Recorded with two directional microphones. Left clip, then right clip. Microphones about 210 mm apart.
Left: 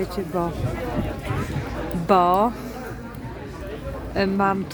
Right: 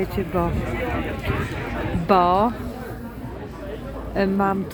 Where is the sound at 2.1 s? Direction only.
20° left (ahead or behind).